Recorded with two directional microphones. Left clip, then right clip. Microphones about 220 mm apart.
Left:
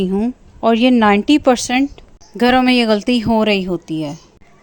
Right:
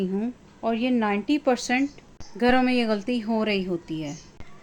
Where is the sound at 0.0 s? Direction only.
40° left (ahead or behind).